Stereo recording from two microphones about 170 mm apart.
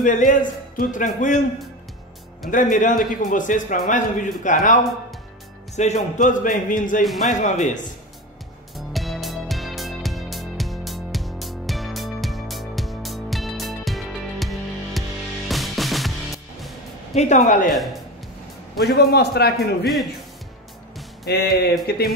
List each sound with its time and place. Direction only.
0.0 s a man's voice: 50° left (ahead or behind)
2.5 s a man's voice: 50° left (ahead or behind)
5.8 s a man's voice: 45° left (ahead or behind)
8.7 s music: centre (ahead or behind)
17.1 s a man's voice: 45° left (ahead or behind)
18.8 s a man's voice: 70° left (ahead or behind)
21.3 s a man's voice: 70° left (ahead or behind)